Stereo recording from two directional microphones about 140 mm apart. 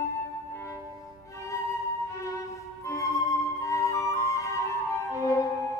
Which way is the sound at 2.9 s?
20° left (ahead or behind).